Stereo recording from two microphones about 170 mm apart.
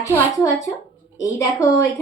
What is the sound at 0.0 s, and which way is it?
A woman's voice, 20° left (ahead or behind).